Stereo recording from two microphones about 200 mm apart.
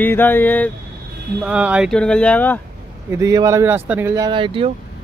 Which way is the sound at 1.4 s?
5° right (ahead or behind).